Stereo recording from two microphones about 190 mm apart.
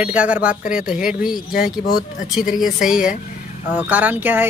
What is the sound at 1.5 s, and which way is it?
Speech, 50° left (ahead or behind).